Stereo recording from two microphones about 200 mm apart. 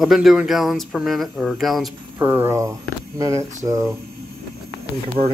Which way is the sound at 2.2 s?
10° right (ahead or behind).